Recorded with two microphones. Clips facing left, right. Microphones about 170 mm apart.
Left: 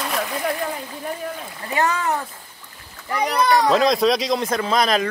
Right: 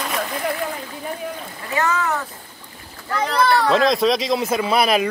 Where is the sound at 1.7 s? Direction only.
35° left (ahead or behind).